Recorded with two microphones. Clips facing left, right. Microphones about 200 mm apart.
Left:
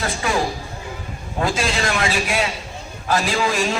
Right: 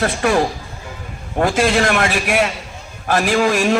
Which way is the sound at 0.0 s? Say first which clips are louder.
Right 5 dB; 60° right (ahead or behind).